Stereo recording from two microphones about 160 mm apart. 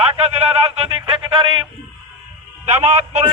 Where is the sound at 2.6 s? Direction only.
45° right (ahead or behind).